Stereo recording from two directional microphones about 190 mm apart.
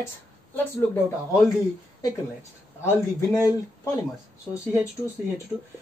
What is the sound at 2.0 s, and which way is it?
Speech, 15° left (ahead or behind).